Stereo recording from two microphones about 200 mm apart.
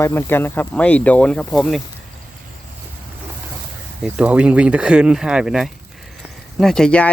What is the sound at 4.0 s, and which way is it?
Speech, 5° right (ahead or behind).